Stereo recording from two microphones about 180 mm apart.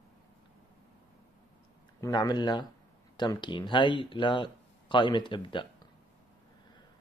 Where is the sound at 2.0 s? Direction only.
20° left (ahead or behind).